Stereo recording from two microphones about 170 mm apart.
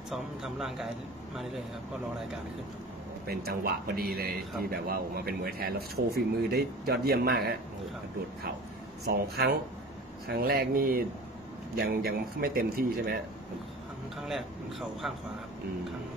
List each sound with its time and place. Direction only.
0.1 s speech: centre (ahead or behind)
3.3 s a man's voice: 65° right (ahead or behind)
9.1 s a man's voice: 70° right (ahead or behind)
14.1 s speech: centre (ahead or behind)